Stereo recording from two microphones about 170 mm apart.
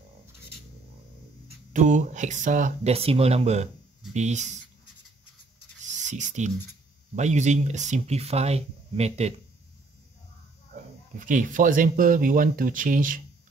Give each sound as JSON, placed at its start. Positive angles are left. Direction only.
{"t": 1.7, "sound": "speech", "side_deg": -45}
{"t": 5.9, "sound": "writing", "side_deg": -45}
{"t": 7.2, "sound": "speech", "side_deg": -45}
{"t": 10.7, "sound": "speech", "side_deg": -50}